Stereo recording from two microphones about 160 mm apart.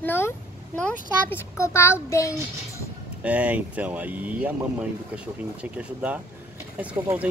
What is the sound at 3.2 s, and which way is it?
Speech, 10° right (ahead or behind).